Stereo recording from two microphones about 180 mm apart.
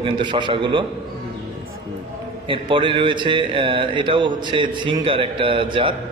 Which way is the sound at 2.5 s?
30° right (ahead or behind).